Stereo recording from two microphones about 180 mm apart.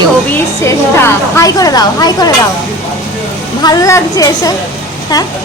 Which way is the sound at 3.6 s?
20° left (ahead or behind).